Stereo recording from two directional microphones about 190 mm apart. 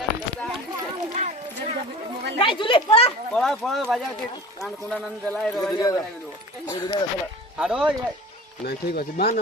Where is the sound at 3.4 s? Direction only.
Centre (ahead or behind).